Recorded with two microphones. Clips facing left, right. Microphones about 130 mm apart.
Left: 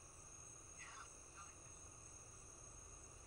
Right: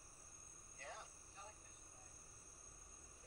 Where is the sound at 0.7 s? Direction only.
70° right (ahead or behind).